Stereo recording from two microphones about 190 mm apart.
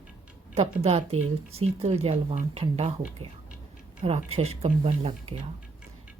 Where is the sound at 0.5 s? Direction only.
35° right (ahead or behind).